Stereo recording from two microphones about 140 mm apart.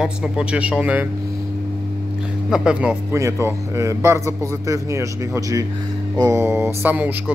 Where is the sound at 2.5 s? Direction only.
5° right (ahead or behind).